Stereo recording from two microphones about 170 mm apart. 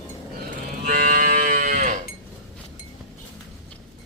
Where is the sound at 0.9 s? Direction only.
55° right (ahead or behind).